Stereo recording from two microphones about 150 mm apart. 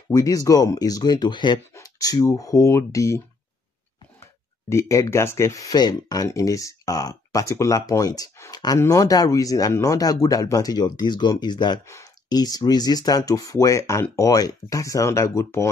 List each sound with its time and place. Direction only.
0.1 s speech: 25° left (ahead or behind)
4.2 s speech: 20° left (ahead or behind)